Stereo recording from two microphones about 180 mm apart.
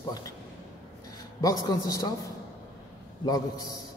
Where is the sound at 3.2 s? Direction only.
20° left (ahead or behind).